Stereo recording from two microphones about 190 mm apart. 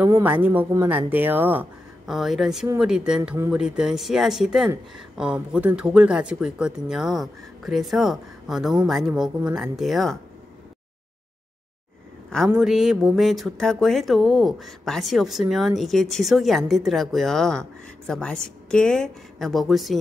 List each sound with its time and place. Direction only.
0.2 s speech: 10° right (ahead or behind)
12.4 s speech: 5° right (ahead or behind)